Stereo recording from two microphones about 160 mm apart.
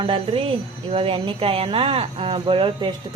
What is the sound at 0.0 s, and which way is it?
A woman's voice, 35° right (ahead or behind).